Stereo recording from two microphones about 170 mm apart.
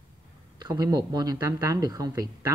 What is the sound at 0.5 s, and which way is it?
Speech, 25° right (ahead or behind).